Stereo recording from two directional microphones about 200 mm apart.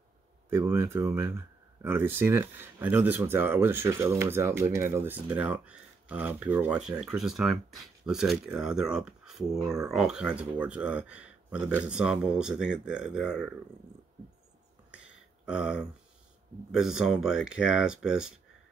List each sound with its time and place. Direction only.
0.5 s speech: 10° right (ahead or behind)
15.4 s speech: 5° right (ahead or behind)